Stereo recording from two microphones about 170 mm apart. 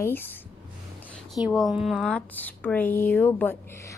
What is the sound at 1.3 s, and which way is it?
A woman's voice, centre (ahead or behind).